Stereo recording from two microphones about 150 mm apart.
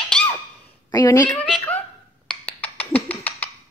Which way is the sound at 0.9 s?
25° left (ahead or behind).